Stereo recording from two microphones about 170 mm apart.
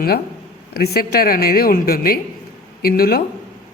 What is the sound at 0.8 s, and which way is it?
A woman's voice, 65° left (ahead or behind).